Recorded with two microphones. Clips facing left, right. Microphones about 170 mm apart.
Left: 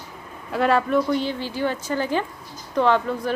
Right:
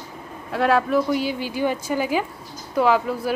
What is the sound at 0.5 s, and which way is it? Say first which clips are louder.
A woman's voice: even; centre (ahead or behind).